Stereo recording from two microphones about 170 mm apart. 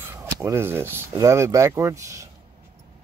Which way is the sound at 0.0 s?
15° right (ahead or behind).